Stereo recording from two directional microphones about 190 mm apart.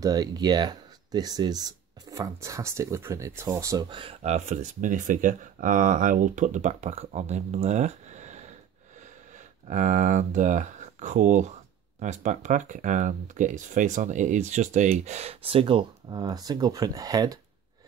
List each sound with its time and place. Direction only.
0.0 s speech: 20° right (ahead or behind); by 8.4 s 40° right (ahead or behind)
9.7 s speech: 40° right (ahead or behind); by 17.4 s 20° right (ahead or behind)